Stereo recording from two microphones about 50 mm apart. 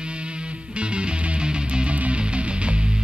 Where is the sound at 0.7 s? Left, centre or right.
Right.